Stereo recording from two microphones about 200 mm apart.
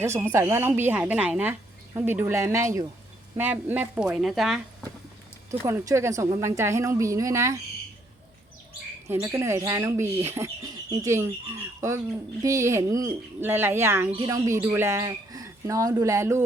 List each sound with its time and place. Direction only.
0.0 s speech: 10° right (ahead or behind)
5.5 s speech: 15° right (ahead or behind)
9.0 s speech: 15° right (ahead or behind)